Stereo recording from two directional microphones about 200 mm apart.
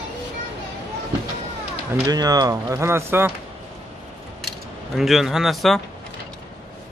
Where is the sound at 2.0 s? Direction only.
20° right (ahead or behind).